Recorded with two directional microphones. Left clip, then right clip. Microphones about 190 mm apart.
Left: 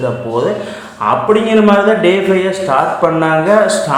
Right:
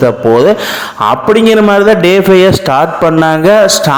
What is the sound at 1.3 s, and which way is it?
A man's voice, 40° right (ahead or behind).